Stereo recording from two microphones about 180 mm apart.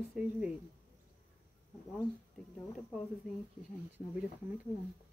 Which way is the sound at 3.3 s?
50° left (ahead or behind).